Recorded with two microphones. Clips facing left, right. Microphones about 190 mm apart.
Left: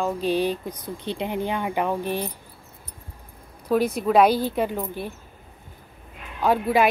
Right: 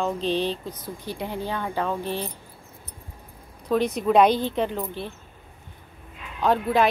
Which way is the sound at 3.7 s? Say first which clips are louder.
Left 1 dB; 5° left (ahead or behind).